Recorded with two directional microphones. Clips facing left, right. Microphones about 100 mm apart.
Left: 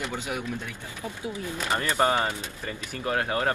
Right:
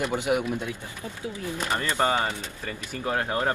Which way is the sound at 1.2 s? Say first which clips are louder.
Right 1 dB; 15° left (ahead or behind).